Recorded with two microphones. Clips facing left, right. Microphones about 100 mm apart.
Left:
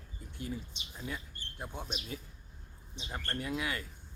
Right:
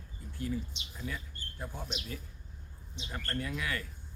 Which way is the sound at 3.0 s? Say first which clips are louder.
Even; 25° left (ahead or behind).